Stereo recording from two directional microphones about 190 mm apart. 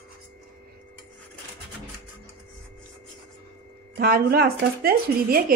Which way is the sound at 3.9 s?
50° right (ahead or behind).